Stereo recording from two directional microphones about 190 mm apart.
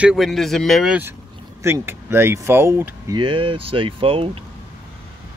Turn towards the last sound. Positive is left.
turn(degrees=-30)  # may be behind; listen again after turning